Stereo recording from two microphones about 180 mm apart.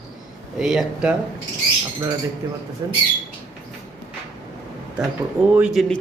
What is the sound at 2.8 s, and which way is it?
Speech, 25° right (ahead or behind).